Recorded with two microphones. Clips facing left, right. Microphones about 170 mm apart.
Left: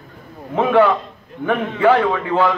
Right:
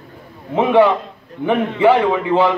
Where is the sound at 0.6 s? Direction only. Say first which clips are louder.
Right 2 dB; 15° right (ahead or behind).